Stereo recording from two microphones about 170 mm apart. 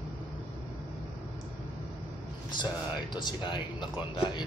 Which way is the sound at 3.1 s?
25° left (ahead or behind).